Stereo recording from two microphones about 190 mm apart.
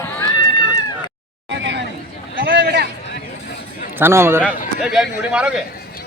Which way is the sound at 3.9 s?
10° right (ahead or behind).